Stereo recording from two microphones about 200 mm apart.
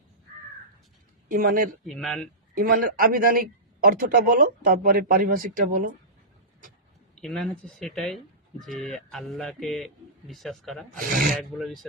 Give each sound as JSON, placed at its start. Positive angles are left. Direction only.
{"t": 1.3, "sound": "speech", "side_deg": -45}
{"t": 1.9, "sound": "speech", "side_deg": 0}
{"t": 2.6, "sound": "speech", "side_deg": -45}
{"t": 7.2, "sound": "speech", "side_deg": 5}